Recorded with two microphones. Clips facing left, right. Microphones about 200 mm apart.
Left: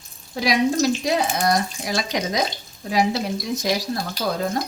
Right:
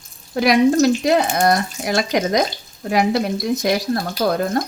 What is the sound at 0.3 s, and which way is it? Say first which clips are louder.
Speech: right 6 dB; 60° right (ahead or behind).